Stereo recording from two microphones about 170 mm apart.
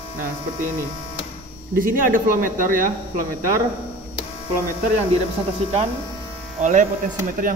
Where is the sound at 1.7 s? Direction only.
55° right (ahead or behind).